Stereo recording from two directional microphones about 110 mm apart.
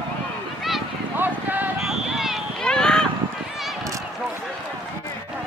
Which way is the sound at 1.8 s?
5° right (ahead or behind).